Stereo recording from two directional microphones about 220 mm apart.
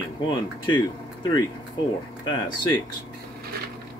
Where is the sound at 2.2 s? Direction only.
20° left (ahead or behind).